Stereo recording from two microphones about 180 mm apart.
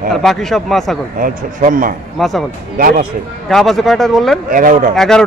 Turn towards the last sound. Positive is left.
turn(degrees=5)  # may be behind; listen again after turning